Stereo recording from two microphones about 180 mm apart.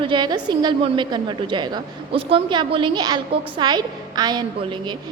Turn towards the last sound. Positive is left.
turn(degrees=-25)  # may be behind; listen again after turning